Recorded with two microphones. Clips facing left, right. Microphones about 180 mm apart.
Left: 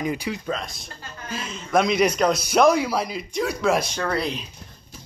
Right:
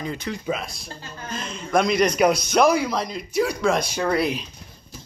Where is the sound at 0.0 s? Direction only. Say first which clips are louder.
Left 4 dB; 15° left (ahead or behind).